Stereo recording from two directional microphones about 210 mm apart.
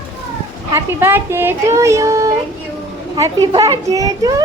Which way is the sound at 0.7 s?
10° right (ahead or behind).